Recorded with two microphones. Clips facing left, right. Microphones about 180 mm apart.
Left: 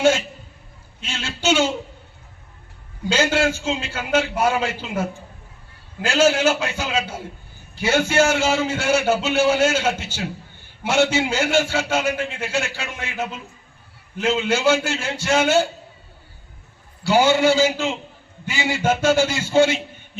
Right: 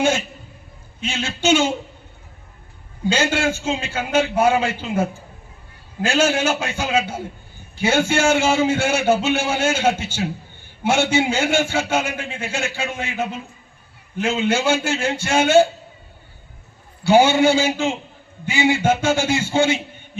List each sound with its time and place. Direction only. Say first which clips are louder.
1.0 s a man's voice: right 2 dB; 50° right (ahead or behind)
3.1 s a man's voice: even; 55° right (ahead or behind)
6.1 s a man's voice: left 1 dB; 55° right (ahead or behind)
17.0 s a man's voice: right 2 dB; 55° right (ahead or behind)